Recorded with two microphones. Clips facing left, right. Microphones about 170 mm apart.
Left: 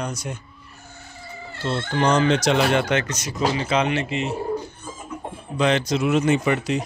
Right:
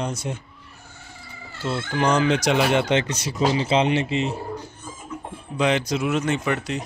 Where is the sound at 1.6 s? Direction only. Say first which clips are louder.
Left 1 dB; 10° right (ahead or behind).